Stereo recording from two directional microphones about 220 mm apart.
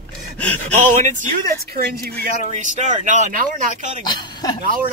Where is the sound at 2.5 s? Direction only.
35° right (ahead or behind).